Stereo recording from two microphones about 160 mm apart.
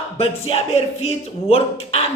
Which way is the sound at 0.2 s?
40° left (ahead or behind).